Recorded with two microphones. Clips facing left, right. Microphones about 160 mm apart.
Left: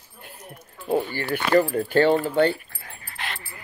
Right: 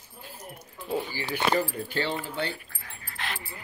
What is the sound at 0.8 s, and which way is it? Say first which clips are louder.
Speech: left 7 dB; 60° left (ahead or behind).